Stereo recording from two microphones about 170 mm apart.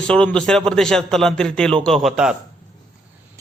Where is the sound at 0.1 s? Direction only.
5° left (ahead or behind).